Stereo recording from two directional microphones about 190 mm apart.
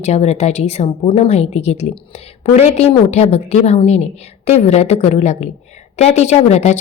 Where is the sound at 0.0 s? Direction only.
35° left (ahead or behind).